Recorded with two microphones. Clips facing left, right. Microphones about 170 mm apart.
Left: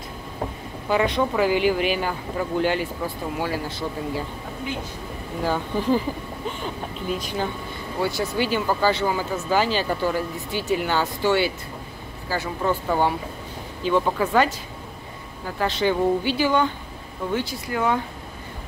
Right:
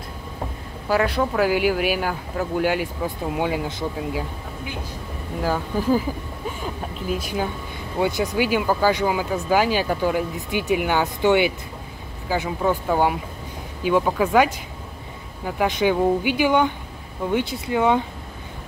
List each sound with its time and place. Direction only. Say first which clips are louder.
0.8 s speech: even; 5° right (ahead or behind)
5.4 s speech: right 1 dB; 5° right (ahead or behind)